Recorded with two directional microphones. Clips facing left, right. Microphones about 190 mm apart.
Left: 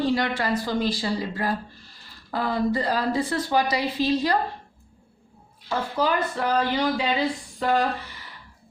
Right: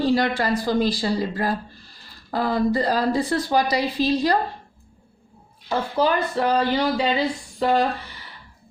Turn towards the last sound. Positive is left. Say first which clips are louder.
# right 3 dB
turn(degrees=-30)  # may be behind; listen again after turning